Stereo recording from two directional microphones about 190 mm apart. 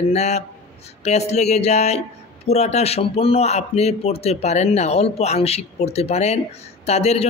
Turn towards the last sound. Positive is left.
turn(degrees=35)  # may be behind; listen again after turning